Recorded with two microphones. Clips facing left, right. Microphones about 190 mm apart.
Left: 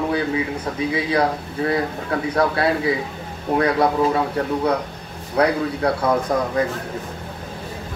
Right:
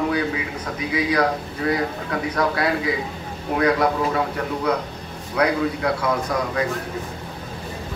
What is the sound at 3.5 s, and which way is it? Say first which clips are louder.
Speech: left 2 dB; 30° left (ahead or behind).